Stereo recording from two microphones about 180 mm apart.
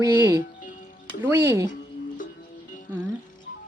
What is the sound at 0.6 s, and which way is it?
Music, 45° left (ahead or behind).